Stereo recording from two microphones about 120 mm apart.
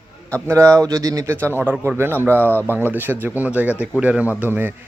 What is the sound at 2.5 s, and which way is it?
Speech, 15° left (ahead or behind).